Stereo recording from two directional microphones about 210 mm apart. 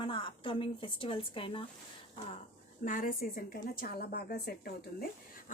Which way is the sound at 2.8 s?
40° left (ahead or behind).